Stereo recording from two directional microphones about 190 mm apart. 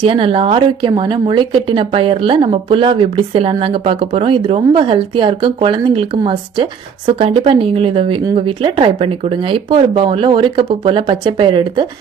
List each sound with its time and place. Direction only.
0.0 s a woman's voice: 25° right (ahead or behind)